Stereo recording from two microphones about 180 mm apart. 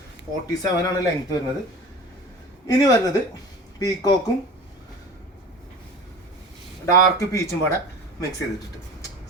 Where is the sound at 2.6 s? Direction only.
20° left (ahead or behind).